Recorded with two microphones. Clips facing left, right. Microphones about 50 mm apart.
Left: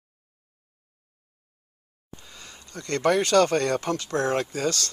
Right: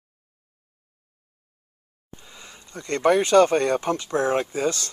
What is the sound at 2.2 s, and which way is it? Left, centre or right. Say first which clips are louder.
Speech: right 2 dB; centre.